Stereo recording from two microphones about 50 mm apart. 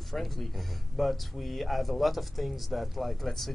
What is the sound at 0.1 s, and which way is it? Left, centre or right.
Speech, centre.